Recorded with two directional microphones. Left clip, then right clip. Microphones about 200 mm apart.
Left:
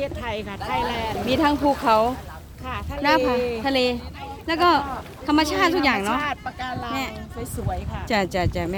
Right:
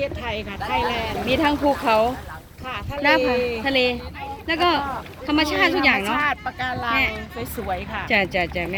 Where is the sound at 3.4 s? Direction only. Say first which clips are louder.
Right 1 dB; 45° left (ahead or behind).